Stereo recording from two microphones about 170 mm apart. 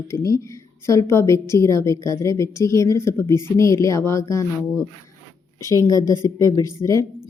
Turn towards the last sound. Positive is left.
turn(degrees=20)  # may be behind; listen again after turning